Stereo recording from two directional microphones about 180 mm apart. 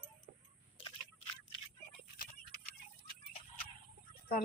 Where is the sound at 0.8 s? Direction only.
30° left (ahead or behind).